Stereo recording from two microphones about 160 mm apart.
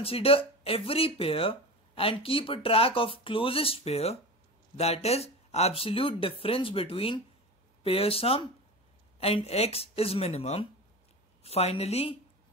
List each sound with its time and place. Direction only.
0.0 s speech: 35° left (ahead or behind)